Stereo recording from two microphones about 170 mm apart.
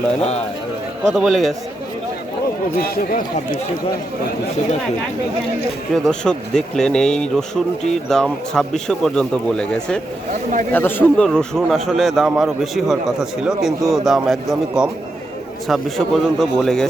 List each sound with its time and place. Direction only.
1.0 s speech: centre (ahead or behind)
2.9 s speech: 60° left (ahead or behind)
5.9 s speech: 5° left (ahead or behind)